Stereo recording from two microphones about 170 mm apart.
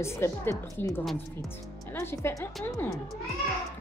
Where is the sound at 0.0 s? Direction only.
15° left (ahead or behind).